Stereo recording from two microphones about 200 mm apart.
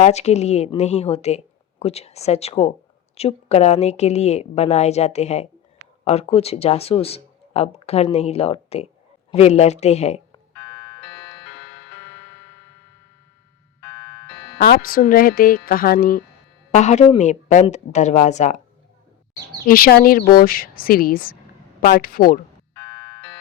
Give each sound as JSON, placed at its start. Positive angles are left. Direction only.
{"t": 0.0, "sound": "speech", "side_deg": 35}
{"t": 11.3, "sound": "tick-tock", "side_deg": 65}
{"t": 13.8, "sound": "music", "side_deg": 65}
{"t": 14.6, "sound": "speech", "side_deg": 45}
{"t": 19.6, "sound": "speech", "side_deg": 45}
{"t": 22.8, "sound": "a sound", "side_deg": 65}